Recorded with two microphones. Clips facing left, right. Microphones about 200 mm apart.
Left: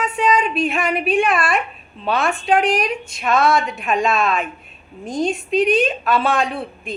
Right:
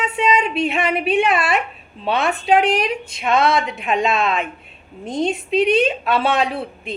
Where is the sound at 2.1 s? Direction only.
20° right (ahead or behind).